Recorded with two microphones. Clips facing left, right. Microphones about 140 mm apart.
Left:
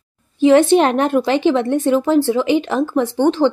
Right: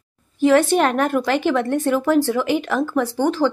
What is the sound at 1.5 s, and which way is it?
Speech, 15° left (ahead or behind).